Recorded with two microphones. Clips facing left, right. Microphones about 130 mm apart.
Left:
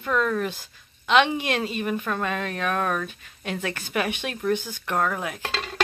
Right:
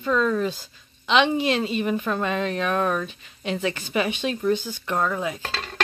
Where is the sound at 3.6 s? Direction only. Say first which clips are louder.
Right 2 dB; 50° left (ahead or behind).